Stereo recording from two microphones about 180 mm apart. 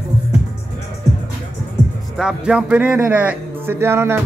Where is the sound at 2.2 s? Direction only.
5° right (ahead or behind).